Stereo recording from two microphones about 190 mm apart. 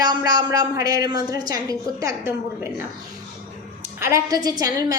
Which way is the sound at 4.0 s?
15° right (ahead or behind).